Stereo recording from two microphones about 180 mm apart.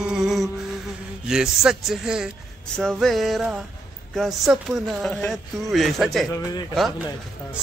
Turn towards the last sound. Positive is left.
turn(degrees=0)  # may be behind; listen again after turning